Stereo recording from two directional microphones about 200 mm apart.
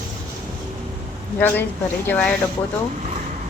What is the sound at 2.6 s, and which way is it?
Speech, 25° left (ahead or behind).